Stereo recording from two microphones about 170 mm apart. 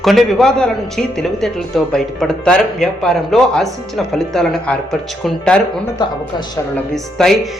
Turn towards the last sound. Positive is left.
turn(degrees=5)  # may be behind; listen again after turning